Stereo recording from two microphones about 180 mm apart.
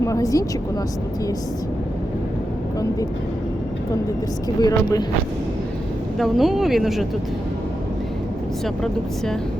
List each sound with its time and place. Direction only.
0.0 s speech: 15° left (ahead or behind)
4.4 s speech: 20° left (ahead or behind)
6.1 s speech: centre (ahead or behind)
8.6 s speech: centre (ahead or behind)